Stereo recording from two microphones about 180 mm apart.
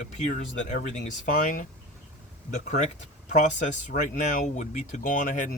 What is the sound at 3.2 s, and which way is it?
Speech, 45° left (ahead or behind).